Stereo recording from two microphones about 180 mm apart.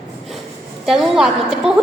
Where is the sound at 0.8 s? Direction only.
Centre (ahead or behind).